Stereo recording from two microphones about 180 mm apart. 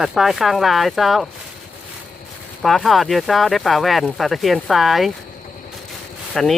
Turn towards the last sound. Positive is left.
turn(degrees=0)  # may be behind; listen again after turning